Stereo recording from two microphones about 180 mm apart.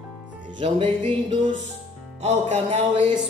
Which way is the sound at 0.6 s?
30° right (ahead or behind).